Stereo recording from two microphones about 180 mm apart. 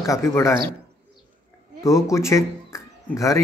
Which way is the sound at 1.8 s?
15° left (ahead or behind).